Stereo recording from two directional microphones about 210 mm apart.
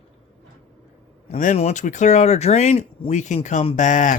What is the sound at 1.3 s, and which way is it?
Speech, 40° left (ahead or behind).